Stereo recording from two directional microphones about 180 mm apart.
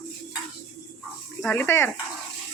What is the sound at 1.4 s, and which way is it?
Speech, 10° left (ahead or behind).